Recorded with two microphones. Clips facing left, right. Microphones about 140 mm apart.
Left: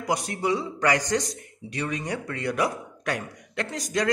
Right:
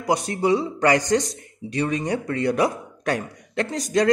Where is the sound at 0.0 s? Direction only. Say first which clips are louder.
Right 5 dB; 25° right (ahead or behind).